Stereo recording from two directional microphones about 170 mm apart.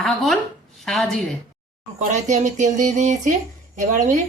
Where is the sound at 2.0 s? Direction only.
45° right (ahead or behind).